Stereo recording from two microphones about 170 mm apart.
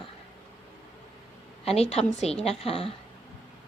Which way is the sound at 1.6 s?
35° left (ahead or behind).